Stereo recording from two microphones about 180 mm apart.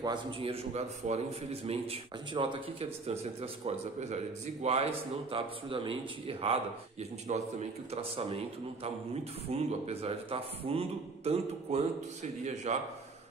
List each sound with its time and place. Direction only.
0.0 s a man's voice: 30° right (ahead or behind)